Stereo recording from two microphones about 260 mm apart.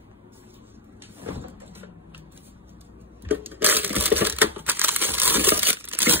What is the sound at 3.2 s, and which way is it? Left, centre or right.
Crushing, centre.